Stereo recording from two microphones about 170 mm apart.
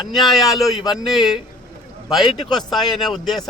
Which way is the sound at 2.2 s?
25° left (ahead or behind).